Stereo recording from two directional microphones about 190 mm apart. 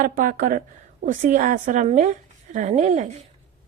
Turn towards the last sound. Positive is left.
turn(degrees=-40)  # may be behind; listen again after turning